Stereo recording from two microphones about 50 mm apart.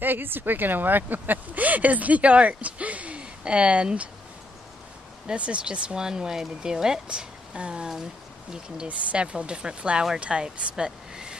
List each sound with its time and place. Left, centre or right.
0.0 s speech: right
5.2 s speech: right